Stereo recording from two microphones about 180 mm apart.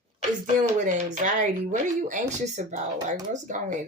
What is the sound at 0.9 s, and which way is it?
Speech, 45° right (ahead or behind).